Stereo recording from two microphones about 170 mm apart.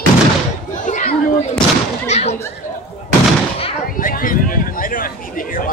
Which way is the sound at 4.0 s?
55° left (ahead or behind).